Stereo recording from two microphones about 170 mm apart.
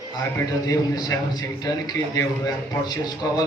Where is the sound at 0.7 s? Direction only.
20° left (ahead or behind).